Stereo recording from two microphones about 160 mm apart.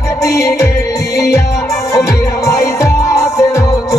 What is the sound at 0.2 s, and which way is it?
Music, 20° left (ahead or behind).